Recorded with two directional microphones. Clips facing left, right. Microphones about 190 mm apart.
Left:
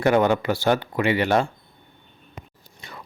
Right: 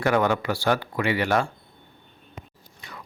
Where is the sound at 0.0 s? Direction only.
25° left (ahead or behind).